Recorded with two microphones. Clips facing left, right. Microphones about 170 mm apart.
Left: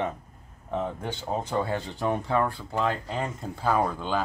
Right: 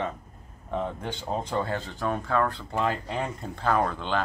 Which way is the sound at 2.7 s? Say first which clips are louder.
Left 1 dB; centre (ahead or behind).